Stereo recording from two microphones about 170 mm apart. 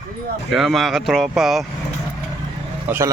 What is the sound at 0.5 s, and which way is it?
Speech, centre (ahead or behind).